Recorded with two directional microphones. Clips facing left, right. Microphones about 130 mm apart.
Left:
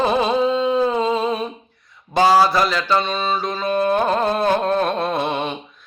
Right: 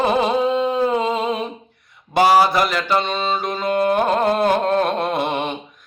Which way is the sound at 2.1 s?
15° right (ahead or behind).